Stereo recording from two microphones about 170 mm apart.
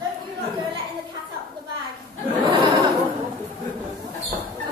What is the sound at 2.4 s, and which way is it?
Chuckle, 30° right (ahead or behind).